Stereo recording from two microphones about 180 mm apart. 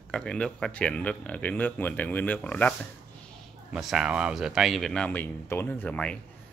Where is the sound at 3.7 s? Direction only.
5° right (ahead or behind).